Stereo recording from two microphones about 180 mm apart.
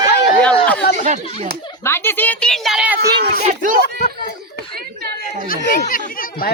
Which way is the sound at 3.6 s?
50° right (ahead or behind).